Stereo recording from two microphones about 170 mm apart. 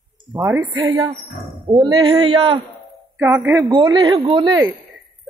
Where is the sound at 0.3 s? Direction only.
10° right (ahead or behind).